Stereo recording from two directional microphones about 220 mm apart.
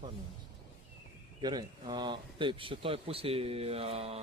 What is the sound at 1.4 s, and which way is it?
Speech, 20° right (ahead or behind).